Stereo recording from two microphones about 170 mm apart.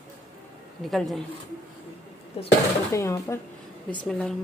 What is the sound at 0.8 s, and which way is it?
Speech, centre (ahead or behind).